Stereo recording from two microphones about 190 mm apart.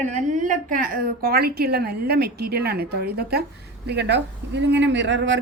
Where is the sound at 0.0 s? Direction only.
40° right (ahead or behind).